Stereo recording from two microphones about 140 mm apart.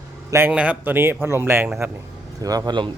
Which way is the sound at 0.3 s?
15° right (ahead or behind).